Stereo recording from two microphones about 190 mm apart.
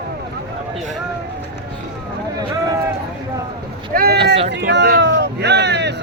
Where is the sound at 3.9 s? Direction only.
55° right (ahead or behind).